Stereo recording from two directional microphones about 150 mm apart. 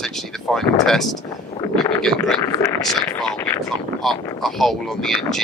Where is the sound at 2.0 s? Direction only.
5° left (ahead or behind).